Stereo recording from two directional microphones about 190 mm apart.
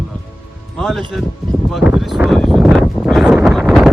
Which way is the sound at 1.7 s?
5° right (ahead or behind).